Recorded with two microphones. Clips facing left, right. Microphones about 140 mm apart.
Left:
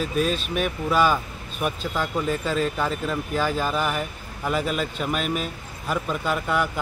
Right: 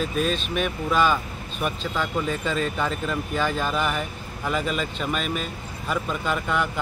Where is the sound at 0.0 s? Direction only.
5° left (ahead or behind).